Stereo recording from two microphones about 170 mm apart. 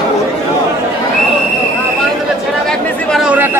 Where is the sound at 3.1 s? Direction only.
5° right (ahead or behind).